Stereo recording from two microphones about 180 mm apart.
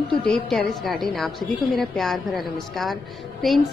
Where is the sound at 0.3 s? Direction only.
Centre (ahead or behind).